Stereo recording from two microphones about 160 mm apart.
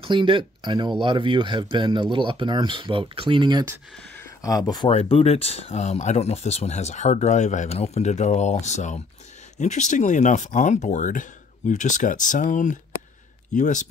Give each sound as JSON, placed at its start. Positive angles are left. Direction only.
{"t": 0.0, "sound": "speech", "side_deg": -30}
{"t": 4.2, "sound": "a sound", "side_deg": 20}
{"t": 4.8, "sound": "speech", "side_deg": 35}